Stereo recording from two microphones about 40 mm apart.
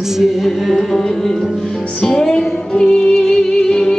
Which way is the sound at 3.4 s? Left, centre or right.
Centre.